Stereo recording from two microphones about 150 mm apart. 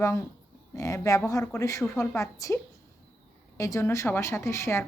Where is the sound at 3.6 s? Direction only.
20° left (ahead or behind).